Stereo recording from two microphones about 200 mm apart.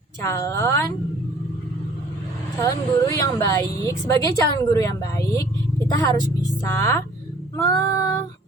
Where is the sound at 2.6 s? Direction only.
15° left (ahead or behind).